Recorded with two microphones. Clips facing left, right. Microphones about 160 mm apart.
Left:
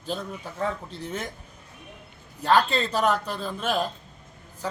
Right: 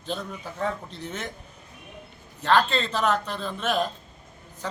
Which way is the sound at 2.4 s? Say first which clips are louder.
Left 1 dB; 10° left (ahead or behind).